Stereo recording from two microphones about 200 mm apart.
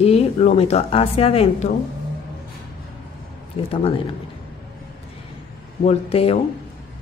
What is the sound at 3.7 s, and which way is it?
Speech, 25° left (ahead or behind).